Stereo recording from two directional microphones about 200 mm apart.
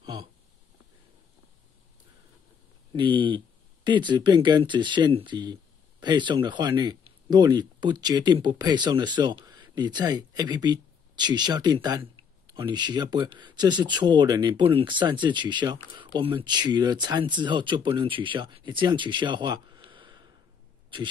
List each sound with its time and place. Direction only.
0.0 s speech: 20° right (ahead or behind)
2.9 s speech: 25° right (ahead or behind)